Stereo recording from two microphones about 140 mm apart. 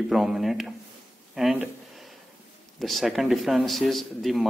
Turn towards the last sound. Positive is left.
turn(degrees=0)  # may be behind; listen again after turning